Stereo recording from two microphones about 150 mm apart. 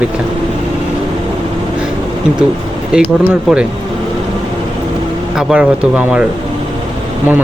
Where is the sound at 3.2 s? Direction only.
5° right (ahead or behind).